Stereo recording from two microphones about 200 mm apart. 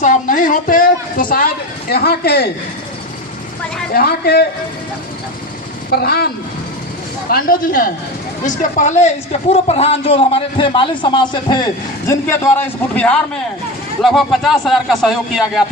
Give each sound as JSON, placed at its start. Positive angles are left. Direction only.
{"t": 0.0, "sound": "a woman's voice", "side_deg": 40}
{"t": 3.9, "sound": "a woman's voice", "side_deg": 50}
{"t": 5.9, "sound": "a woman's voice", "side_deg": 50}